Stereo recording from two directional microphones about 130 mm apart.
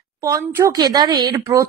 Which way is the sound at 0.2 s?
25° right (ahead or behind).